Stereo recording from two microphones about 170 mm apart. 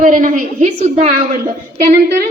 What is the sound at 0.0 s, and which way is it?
Speech, 50° right (ahead or behind).